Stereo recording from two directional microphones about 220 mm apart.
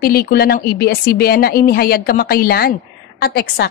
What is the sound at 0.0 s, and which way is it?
A woman's voice, 45° left (ahead or behind).